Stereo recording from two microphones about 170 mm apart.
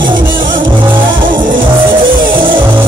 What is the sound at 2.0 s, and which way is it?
Music, 55° right (ahead or behind).